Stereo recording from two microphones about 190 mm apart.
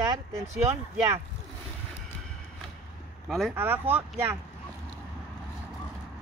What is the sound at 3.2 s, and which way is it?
Speech, centre (ahead or behind).